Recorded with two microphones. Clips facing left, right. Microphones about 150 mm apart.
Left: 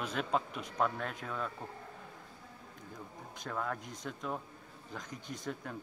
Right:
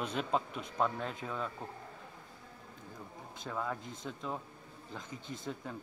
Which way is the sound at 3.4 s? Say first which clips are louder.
Even; 5° right (ahead or behind).